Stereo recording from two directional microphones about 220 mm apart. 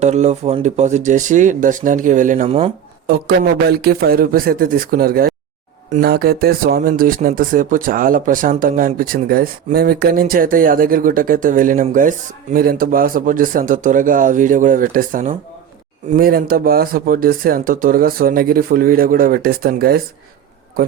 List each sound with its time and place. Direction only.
0.0 s a man's voice: 30° right (ahead or behind)